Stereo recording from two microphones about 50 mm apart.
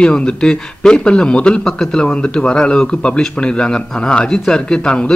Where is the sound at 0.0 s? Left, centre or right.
Centre.